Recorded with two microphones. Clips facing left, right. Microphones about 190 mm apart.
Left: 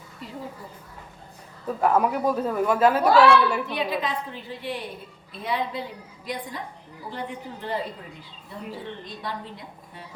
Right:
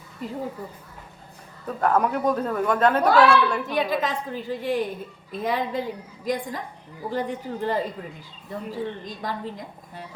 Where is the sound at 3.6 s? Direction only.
45° right (ahead or behind).